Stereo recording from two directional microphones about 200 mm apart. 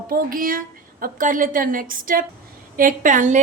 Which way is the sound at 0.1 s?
45° right (ahead or behind).